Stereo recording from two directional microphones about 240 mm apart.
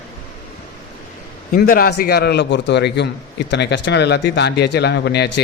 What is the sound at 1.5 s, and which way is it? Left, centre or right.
A man's voice, left.